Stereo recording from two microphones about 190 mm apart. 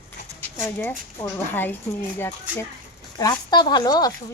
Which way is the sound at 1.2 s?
10° left (ahead or behind).